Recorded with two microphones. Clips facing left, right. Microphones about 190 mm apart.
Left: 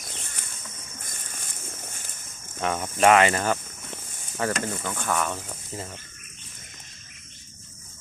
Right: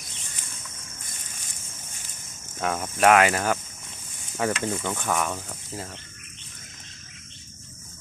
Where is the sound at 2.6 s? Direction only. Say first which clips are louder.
Left 1 dB; 5° right (ahead or behind).